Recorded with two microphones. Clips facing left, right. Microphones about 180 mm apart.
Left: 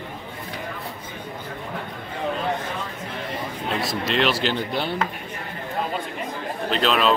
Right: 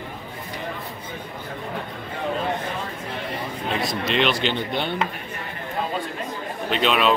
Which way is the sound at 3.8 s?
Centre (ahead or behind).